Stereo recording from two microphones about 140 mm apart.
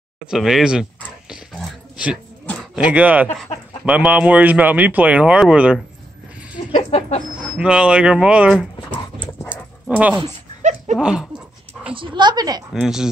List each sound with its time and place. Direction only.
0.3 s speech: centre (ahead or behind)
1.3 s dog: 5° right (ahead or behind)
2.7 s speech: 10° right (ahead or behind)
6.9 s speech: 45° left (ahead or behind)
7.5 s speech: 10° right (ahead or behind)
9.5 s dog: 10° right (ahead or behind)
11.9 s speech: 35° right (ahead or behind)
12.7 s speech: 5° right (ahead or behind)